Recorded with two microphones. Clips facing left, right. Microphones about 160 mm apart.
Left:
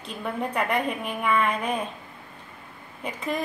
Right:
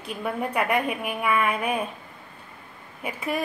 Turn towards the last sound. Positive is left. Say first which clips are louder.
# right 1 dB
turn(degrees=-10)  # may be behind; listen again after turning